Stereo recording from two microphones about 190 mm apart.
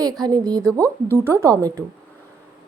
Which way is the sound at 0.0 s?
20° right (ahead or behind).